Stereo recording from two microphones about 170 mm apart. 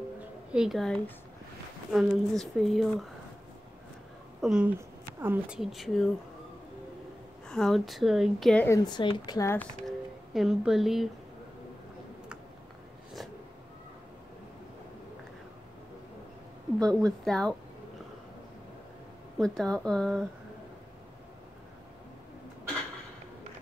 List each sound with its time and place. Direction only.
0.5 s a woman's voice: 5° right (ahead or behind)
4.4 s speech: 5° right (ahead or behind)
5.6 s a woman's voice: centre (ahead or behind)
7.4 s a woman's voice: 5° left (ahead or behind)
8.6 s a woman's voice: 20° left (ahead or behind)
9.8 s a sound: centre (ahead or behind)
16.8 s a woman's voice: 5° left (ahead or behind)
19.3 s a woman's voice: 5° left (ahead or behind)